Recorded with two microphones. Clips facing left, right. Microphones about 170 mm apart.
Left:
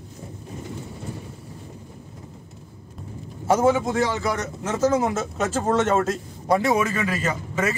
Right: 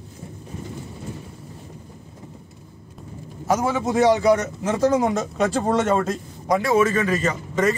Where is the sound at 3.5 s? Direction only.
25° left (ahead or behind).